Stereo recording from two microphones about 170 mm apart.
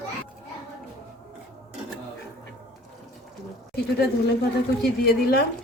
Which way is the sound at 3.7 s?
75° left (ahead or behind).